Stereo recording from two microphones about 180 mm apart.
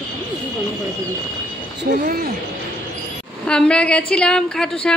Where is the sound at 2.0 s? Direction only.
55° right (ahead or behind).